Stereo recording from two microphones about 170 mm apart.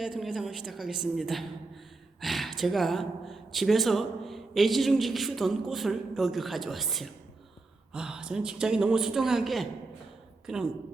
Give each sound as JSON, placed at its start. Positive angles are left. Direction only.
{"t": 0.0, "sound": "speech", "side_deg": -5}